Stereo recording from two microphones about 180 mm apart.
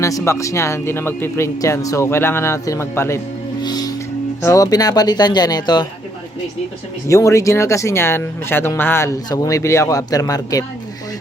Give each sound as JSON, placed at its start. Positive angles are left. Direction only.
{"t": 0.0, "sound": "speech", "side_deg": 15}
{"t": 3.6, "sound": "music", "side_deg": 20}
{"t": 4.4, "sound": "speech", "side_deg": 20}
{"t": 7.1, "sound": "speech", "side_deg": 15}